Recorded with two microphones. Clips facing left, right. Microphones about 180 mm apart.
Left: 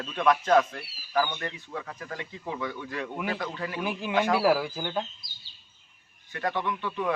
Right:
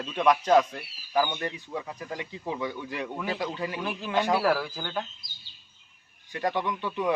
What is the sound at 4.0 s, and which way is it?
Speech, 15° left (ahead or behind).